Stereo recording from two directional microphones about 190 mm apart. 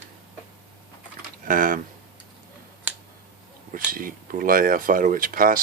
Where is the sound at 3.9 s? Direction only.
45° right (ahead or behind).